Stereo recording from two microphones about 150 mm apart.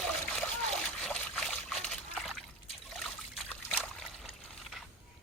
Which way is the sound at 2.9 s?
Centre (ahead or behind).